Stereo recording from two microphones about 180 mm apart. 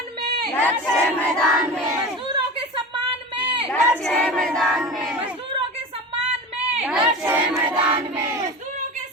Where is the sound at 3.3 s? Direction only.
25° right (ahead or behind).